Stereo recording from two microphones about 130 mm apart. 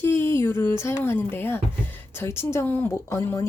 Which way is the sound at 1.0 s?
15° left (ahead or behind).